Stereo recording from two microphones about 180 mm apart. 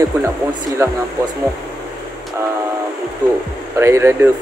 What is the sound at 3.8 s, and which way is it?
Speech, 15° right (ahead or behind).